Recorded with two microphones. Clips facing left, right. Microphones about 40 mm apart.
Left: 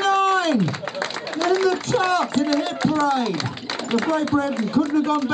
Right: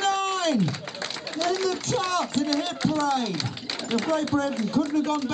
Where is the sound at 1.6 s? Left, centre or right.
Left.